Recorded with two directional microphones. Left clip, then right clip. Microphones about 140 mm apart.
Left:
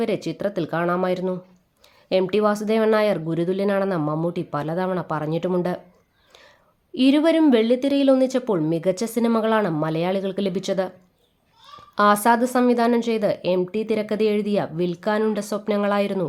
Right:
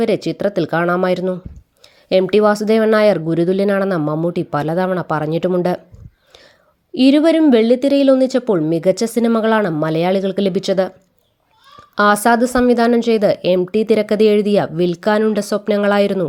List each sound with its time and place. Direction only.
0.0 s speech: 35° right (ahead or behind)
6.9 s a woman's voice: 30° right (ahead or behind)
11.9 s speech: 30° right (ahead or behind)